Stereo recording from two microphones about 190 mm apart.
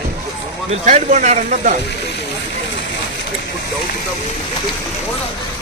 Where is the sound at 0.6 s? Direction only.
40° right (ahead or behind).